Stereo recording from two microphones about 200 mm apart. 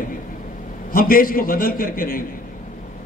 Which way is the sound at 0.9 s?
45° left (ahead or behind).